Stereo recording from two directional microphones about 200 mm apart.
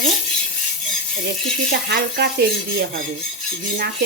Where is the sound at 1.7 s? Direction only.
50° right (ahead or behind).